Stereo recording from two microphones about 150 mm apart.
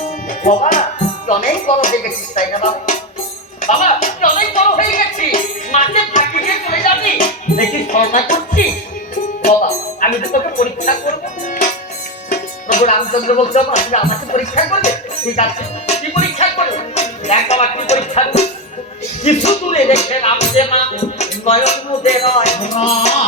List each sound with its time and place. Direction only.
0.0 s speech: 55° left (ahead or behind)
5.9 s music: 50° left (ahead or behind)
6.8 s music: 65° left (ahead or behind)
9.4 s speech: 55° left (ahead or behind)
12.3 s music: 60° left (ahead or behind)
13.2 s speech: 50° left (ahead or behind)
16.1 s music: 45° left (ahead or behind)
19.2 s speech: 45° left (ahead or behind)